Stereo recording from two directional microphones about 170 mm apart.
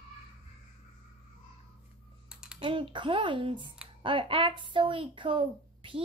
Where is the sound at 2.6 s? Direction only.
30° right (ahead or behind).